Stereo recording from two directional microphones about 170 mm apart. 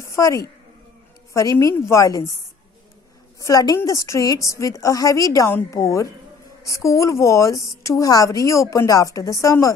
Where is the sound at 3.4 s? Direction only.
20° left (ahead or behind).